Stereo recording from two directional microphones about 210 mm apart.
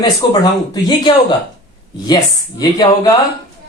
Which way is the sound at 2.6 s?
15° left (ahead or behind).